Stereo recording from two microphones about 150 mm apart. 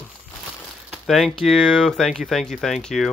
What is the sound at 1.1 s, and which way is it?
Speech, centre (ahead or behind).